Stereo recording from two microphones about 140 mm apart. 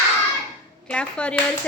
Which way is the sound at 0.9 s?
10° left (ahead or behind).